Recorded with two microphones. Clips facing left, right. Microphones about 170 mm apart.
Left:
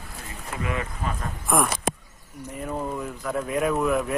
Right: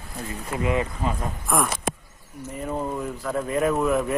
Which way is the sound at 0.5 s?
25° right (ahead or behind).